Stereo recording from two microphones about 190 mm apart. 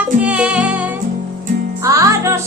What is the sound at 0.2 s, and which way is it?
Music, 5° right (ahead or behind).